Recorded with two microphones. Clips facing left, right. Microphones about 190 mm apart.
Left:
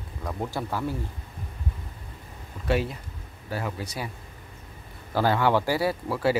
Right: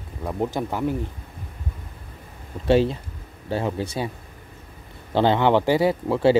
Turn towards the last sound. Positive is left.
turn(degrees=-25)  # may be behind; listen again after turning